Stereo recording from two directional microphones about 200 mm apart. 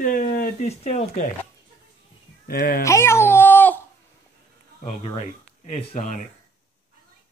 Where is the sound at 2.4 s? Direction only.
45° left (ahead or behind).